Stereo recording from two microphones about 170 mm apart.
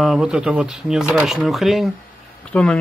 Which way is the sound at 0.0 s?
Centre (ahead or behind).